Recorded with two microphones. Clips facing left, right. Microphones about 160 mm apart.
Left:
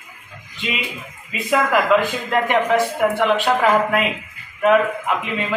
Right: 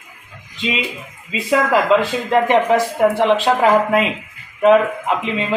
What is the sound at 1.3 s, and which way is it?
A man's voice, 25° right (ahead or behind).